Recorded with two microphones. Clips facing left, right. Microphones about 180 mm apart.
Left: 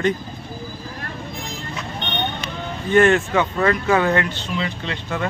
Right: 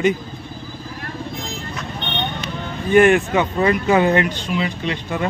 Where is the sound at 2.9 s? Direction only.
15° right (ahead or behind).